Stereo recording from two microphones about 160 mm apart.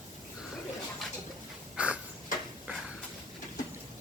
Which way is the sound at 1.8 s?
10° right (ahead or behind).